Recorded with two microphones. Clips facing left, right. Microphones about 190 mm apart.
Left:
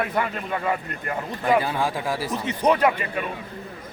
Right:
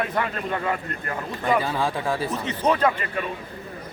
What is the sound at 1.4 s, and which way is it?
Speech, 10° left (ahead or behind).